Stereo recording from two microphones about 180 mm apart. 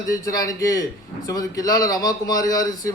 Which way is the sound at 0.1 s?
20° left (ahead or behind).